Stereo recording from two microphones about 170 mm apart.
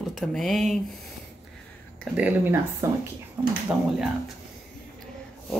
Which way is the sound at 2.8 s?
15° right (ahead or behind).